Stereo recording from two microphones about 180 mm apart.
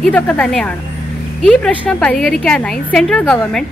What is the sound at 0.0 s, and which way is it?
A woman's voice, 5° left (ahead or behind).